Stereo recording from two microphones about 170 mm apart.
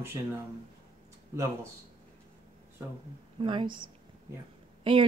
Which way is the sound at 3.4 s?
30° right (ahead or behind).